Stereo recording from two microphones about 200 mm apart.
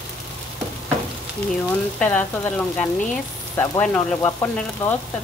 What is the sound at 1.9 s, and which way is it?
Speech, 10° left (ahead or behind).